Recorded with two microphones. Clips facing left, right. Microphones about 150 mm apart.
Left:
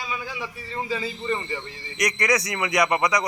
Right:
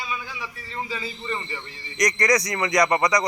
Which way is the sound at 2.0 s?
5° left (ahead or behind).